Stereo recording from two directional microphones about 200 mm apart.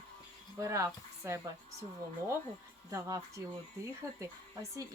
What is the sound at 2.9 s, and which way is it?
Speech, 15° right (ahead or behind).